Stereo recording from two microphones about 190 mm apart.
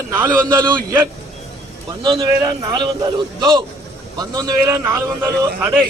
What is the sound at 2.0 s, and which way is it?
A man's voice, 25° right (ahead or behind).